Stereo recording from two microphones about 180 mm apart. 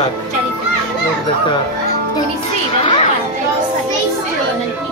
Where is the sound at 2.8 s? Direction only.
30° left (ahead or behind).